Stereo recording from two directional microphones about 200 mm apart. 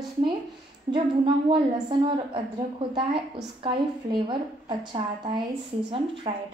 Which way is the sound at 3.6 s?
25° right (ahead or behind).